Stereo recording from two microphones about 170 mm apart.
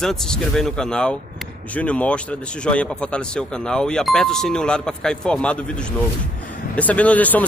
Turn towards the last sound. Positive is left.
turn(degrees=10)  # may be behind; listen again after turning